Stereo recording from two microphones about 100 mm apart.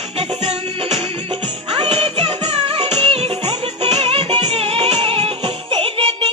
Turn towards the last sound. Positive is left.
turn(degrees=-70)  # may be behind; listen again after turning